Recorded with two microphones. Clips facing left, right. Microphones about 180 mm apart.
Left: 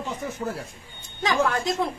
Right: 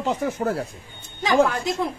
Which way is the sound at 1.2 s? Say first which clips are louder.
Right 4 dB; centre (ahead or behind).